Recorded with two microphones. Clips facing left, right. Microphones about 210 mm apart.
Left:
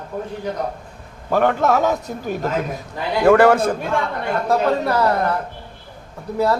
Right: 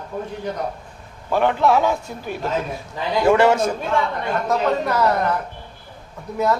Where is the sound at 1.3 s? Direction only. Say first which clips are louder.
Left 1 dB; 45° left (ahead or behind).